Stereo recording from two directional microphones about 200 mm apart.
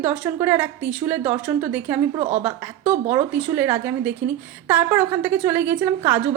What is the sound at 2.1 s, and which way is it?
Speech, 35° right (ahead or behind).